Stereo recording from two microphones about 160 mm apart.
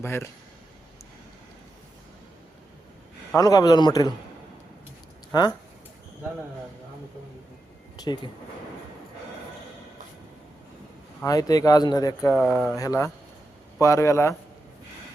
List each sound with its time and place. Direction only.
0.0 s speech: 15° left (ahead or behind)
3.3 s speech: 20° left (ahead or behind)
5.3 s speech: 25° left (ahead or behind)
7.9 s speech: 25° left (ahead or behind)
11.2 s speech: 20° left (ahead or behind)
12.3 s speech: 5° left (ahead or behind)
12.7 s speech: 20° left (ahead or behind)